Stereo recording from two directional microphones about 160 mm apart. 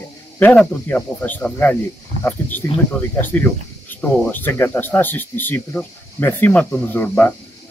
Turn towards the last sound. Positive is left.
turn(degrees=10)  # may be behind; listen again after turning